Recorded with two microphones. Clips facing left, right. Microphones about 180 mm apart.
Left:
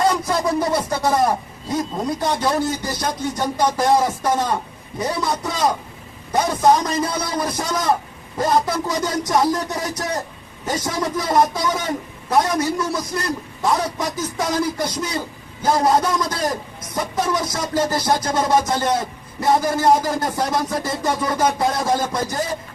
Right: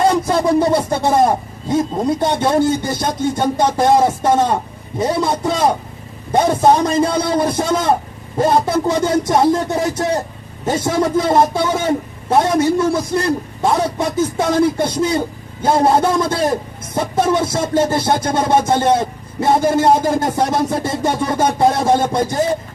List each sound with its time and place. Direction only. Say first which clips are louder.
0.0 s a man's voice: right 5 dB; 25° right (ahead or behind)